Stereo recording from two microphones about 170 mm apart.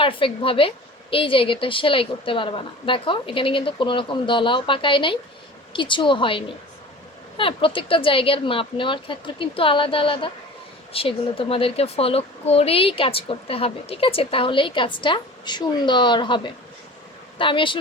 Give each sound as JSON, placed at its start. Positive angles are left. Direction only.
{"t": 0.0, "sound": "a woman's voice", "side_deg": 30}